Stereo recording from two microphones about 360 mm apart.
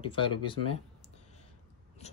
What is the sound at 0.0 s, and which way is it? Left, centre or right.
Speech, centre.